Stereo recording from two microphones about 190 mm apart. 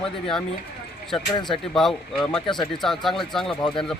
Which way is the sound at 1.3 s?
25° left (ahead or behind).